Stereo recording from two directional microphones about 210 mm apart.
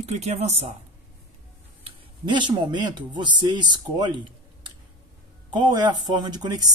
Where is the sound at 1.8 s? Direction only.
20° right (ahead or behind).